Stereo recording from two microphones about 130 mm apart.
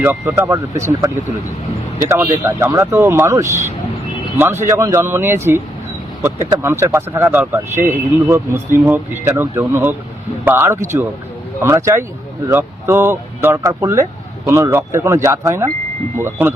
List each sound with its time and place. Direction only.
0.0 s a man's voice: 20° right (ahead or behind)